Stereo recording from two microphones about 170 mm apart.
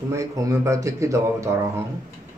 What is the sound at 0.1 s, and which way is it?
Speech, 20° right (ahead or behind).